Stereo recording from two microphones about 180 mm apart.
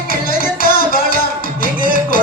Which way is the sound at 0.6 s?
55° left (ahead or behind).